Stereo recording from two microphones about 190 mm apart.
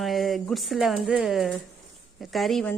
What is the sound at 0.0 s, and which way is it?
A woman's voice, centre (ahead or behind).